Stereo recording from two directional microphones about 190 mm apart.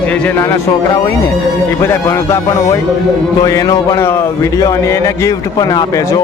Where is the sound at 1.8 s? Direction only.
15° left (ahead or behind).